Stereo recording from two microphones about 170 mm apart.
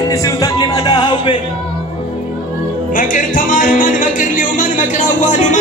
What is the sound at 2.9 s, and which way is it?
Music, 55° left (ahead or behind).